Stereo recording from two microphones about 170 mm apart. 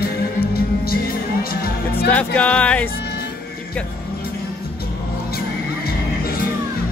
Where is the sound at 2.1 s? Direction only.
5° left (ahead or behind).